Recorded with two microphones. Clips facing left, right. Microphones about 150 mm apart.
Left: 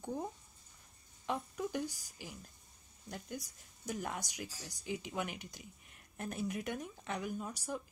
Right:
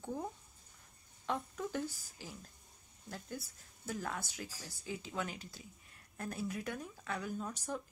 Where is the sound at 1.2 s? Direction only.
10° left (ahead or behind).